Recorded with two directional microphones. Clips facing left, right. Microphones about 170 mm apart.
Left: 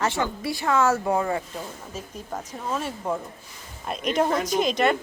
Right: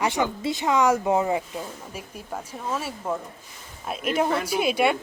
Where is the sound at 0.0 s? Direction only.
15° right (ahead or behind).